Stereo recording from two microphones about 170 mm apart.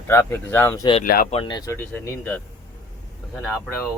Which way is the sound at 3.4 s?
Centre (ahead or behind).